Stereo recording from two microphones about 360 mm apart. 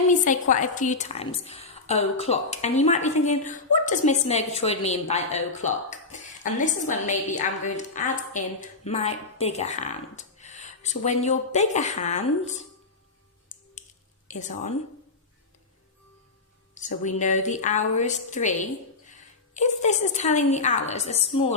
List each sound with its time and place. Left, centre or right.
0.1 s a woman's voice: left
13.5 s music: centre
14.3 s a woman's voice: centre
16.7 s a woman's voice: left